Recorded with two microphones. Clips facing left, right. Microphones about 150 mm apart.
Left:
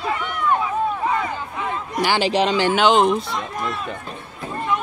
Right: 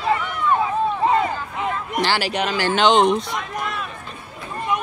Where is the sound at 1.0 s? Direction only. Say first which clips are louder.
Right 4 dB; 25° right (ahead or behind).